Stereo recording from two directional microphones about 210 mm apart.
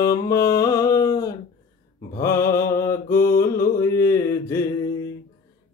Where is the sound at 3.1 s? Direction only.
45° left (ahead or behind).